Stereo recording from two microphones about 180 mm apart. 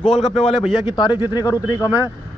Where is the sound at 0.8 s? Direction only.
25° left (ahead or behind).